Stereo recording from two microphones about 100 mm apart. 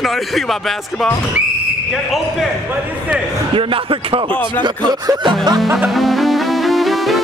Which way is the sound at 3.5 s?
65° right (ahead or behind).